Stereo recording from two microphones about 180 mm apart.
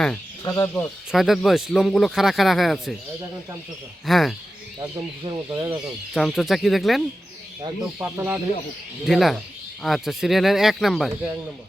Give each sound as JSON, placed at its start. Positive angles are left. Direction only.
{"t": 0.4, "sound": "speech", "side_deg": 20}
{"t": 0.7, "sound": "speech", "side_deg": 0}
{"t": 4.0, "sound": "speech", "side_deg": 0}
{"t": 5.2, "sound": "speech", "side_deg": -25}
{"t": 6.1, "sound": "speech", "side_deg": 0}
{"t": 7.9, "sound": "speech", "side_deg": -15}
{"t": 9.0, "sound": "speech", "side_deg": 0}